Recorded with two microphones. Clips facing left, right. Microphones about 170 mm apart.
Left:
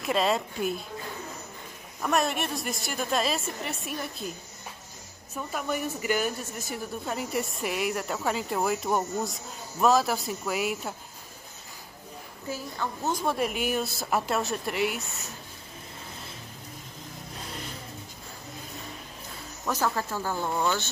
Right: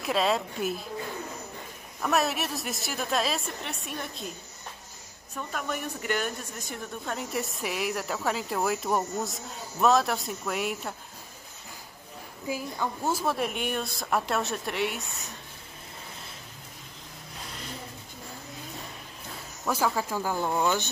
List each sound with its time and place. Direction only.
0.0 s speech: centre (ahead or behind)
2.0 s speech: centre (ahead or behind)
5.3 s speech: 5° left (ahead or behind)
12.4 s speech: 10° right (ahead or behind)
19.6 s speech: 10° right (ahead or behind)